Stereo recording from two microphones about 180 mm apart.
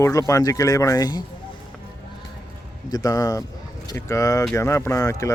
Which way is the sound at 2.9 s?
20° left (ahead or behind).